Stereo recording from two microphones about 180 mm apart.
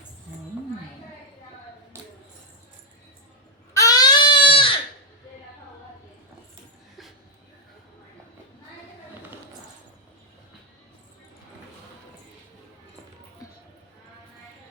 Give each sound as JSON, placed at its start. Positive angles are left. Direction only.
{"t": 3.8, "sound": "baby cry", "side_deg": 20}
{"t": 13.4, "sound": "music", "side_deg": 20}